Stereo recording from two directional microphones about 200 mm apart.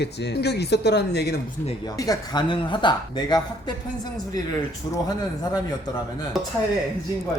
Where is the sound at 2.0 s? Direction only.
20° left (ahead or behind).